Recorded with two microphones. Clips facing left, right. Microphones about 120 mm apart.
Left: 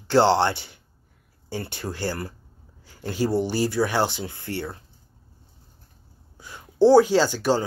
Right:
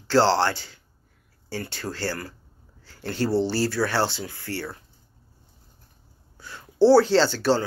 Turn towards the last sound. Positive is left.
turn(degrees=15)  # may be behind; listen again after turning